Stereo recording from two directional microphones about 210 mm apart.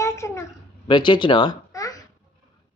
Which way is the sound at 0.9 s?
20° left (ahead or behind).